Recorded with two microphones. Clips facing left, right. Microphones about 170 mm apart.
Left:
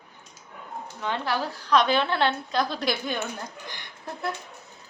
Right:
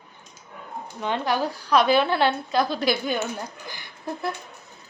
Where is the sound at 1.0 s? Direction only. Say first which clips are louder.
Right 4 dB; 20° right (ahead or behind).